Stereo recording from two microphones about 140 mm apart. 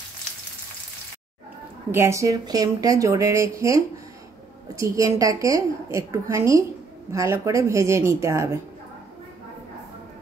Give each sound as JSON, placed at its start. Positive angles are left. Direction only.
{"t": 1.9, "sound": "a woman's voice", "side_deg": -20}